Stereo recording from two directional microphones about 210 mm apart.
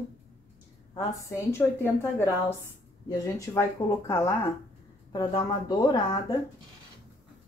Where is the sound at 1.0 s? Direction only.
15° left (ahead or behind).